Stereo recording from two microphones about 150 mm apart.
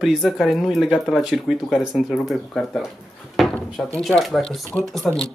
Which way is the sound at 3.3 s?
5° left (ahead or behind).